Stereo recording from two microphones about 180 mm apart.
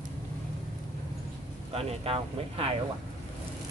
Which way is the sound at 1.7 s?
30° right (ahead or behind).